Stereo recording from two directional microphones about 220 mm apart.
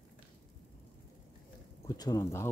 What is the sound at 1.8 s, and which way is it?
Speech, 15° left (ahead or behind).